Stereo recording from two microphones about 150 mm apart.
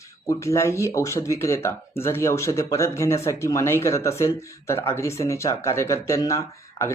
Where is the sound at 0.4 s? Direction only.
20° left (ahead or behind).